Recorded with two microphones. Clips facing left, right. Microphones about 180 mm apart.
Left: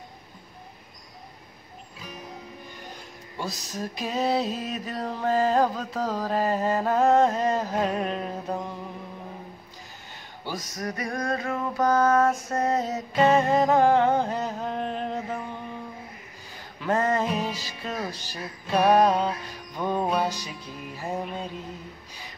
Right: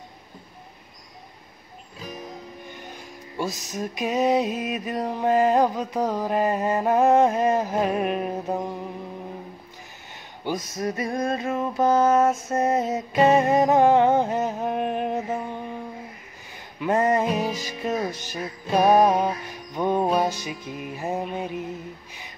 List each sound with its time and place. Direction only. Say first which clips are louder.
3.3 s music: right 4 dB; 20° right (ahead or behind)
10.4 s music: right 5 dB; 20° right (ahead or behind)
16.8 s music: right 3 dB; 20° right (ahead or behind)